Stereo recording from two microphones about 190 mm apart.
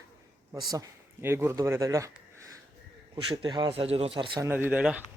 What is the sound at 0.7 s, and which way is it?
Speech, 15° right (ahead or behind).